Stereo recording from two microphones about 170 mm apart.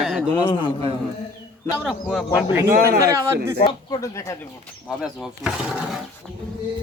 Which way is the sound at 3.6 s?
20° left (ahead or behind).